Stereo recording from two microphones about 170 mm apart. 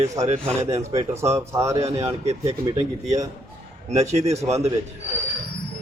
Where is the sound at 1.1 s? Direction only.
15° right (ahead or behind).